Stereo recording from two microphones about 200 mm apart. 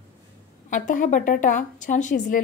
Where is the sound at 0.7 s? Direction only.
40° left (ahead or behind).